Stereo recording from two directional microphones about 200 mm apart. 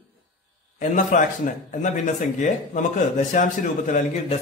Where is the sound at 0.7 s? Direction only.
40° left (ahead or behind).